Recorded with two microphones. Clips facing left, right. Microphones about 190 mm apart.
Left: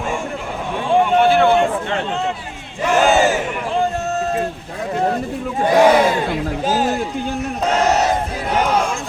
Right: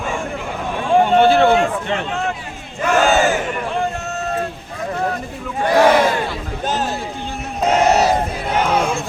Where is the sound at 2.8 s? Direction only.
20° left (ahead or behind).